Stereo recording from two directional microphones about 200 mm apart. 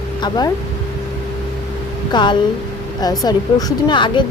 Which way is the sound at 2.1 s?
25° left (ahead or behind).